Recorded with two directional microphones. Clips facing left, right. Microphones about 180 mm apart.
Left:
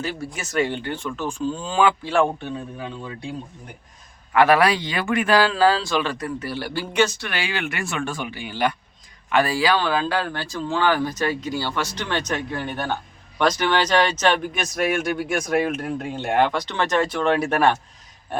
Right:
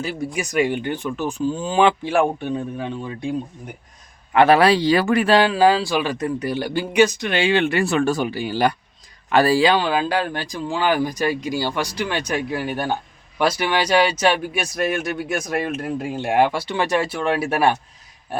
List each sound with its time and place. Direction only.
0.0 s speech: 15° right (ahead or behind)
2.7 s speech: 25° right (ahead or behind)
5.4 s speech: 15° right (ahead or behind); by 9.7 s 30° right (ahead or behind)
9.7 s speech: 15° right (ahead or behind)